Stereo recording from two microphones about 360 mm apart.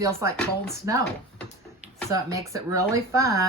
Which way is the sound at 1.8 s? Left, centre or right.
Centre.